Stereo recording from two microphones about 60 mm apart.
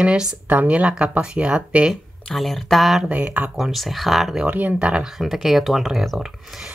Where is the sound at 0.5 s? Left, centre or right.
Right.